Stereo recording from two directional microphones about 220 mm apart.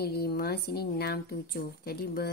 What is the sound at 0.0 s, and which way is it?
A woman's voice, 45° left (ahead or behind).